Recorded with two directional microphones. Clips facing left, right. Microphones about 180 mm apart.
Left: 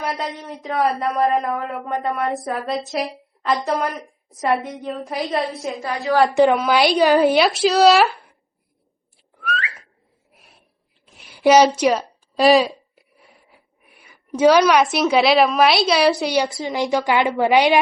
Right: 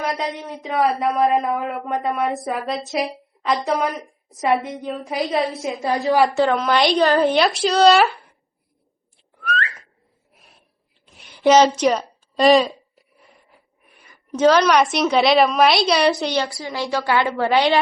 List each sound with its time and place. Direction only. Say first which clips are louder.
0.0 s a woman's voice: right 2 dB; centre (ahead or behind)
5.8 s a woman's voice: right 3 dB; 30° right (ahead or behind)
6.3 s a woman's voice: left 3 dB; 15° left (ahead or behind)
9.4 s whistling: right 1 dB; 5° left (ahead or behind)
10.3 s a sound: left 1 dB; centre (ahead or behind)
13.5 s a woman's voice: left 1 dB; 5° left (ahead or behind)